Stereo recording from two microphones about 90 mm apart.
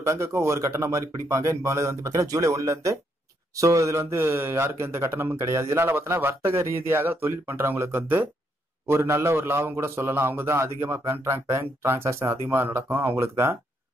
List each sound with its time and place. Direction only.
0.0 s speech: 30° right (ahead or behind)